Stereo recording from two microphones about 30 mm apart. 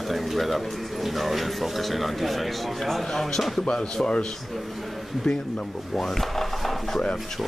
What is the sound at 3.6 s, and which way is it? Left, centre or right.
Speech, left.